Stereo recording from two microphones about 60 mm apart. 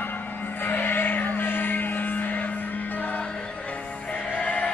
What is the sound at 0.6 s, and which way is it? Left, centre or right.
Music, left.